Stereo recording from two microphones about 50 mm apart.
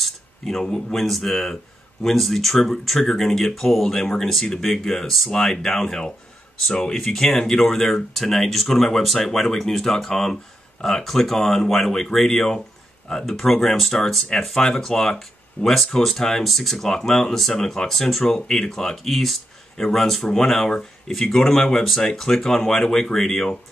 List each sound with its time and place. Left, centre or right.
0.0 s a sound: centre
0.7 s speech: centre
0.9 s speech: centre
4.0 s speech: centre
4.3 s speech: centre